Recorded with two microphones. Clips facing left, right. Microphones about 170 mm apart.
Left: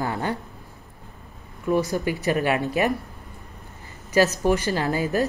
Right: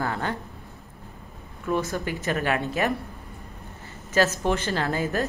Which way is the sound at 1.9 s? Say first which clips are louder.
Left 4 dB; 10° left (ahead or behind).